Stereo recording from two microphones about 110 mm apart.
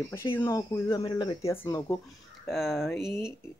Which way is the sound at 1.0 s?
45° left (ahead or behind).